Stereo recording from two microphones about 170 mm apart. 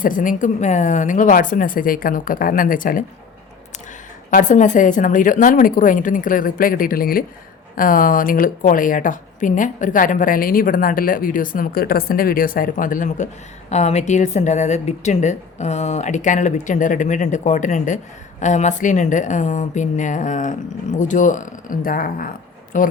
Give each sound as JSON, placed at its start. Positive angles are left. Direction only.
{"t": 0.0, "sound": "a man's voice", "side_deg": 50}
{"t": 4.3, "sound": "a man's voice", "side_deg": 50}